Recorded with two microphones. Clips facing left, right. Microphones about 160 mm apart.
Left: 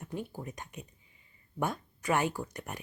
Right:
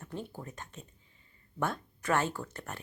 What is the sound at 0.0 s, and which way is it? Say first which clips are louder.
Speech: left 2 dB; 10° left (ahead or behind).